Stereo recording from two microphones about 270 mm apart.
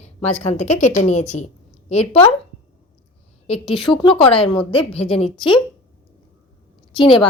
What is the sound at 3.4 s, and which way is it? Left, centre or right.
A woman's voice, left.